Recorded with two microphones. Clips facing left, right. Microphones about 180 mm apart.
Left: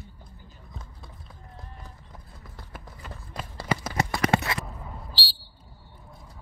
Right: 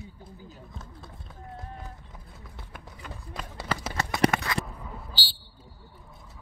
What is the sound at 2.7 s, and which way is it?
Run, centre (ahead or behind).